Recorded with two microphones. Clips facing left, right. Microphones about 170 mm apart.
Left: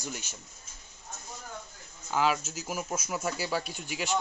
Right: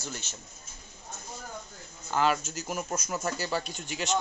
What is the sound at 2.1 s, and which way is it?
Speech, 5° left (ahead or behind).